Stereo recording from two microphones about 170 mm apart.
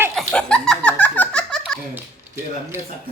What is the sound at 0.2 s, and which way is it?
Giggle, centre (ahead or behind).